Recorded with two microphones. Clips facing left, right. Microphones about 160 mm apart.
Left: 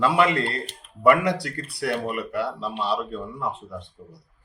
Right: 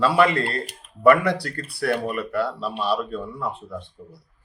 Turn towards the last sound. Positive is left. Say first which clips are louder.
# right 1 dB
turn(degrees=20)  # may be behind; listen again after turning